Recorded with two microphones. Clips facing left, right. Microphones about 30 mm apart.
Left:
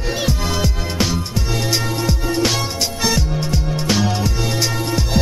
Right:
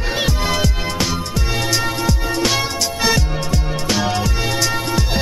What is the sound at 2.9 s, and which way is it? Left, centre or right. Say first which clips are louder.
Music: right 3 dB; centre.